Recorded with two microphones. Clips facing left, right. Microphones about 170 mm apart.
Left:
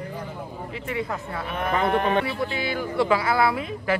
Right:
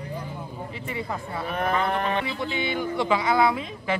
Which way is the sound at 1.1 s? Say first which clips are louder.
Even; centre (ahead or behind).